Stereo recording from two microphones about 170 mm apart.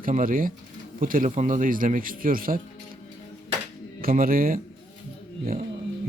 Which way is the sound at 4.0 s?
55° right (ahead or behind).